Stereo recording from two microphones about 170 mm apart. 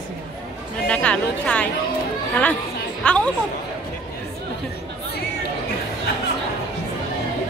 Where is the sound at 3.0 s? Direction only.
5° left (ahead or behind).